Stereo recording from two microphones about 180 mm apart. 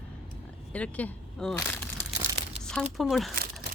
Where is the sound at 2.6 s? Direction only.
5° left (ahead or behind).